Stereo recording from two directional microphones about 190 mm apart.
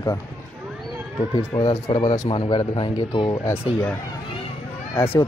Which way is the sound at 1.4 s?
20° left (ahead or behind).